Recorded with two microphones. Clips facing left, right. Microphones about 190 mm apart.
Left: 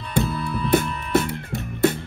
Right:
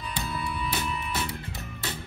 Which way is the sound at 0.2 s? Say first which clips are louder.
Left 9 dB; centre (ahead or behind).